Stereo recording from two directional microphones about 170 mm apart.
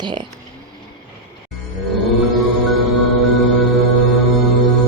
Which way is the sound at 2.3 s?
Centre (ahead or behind).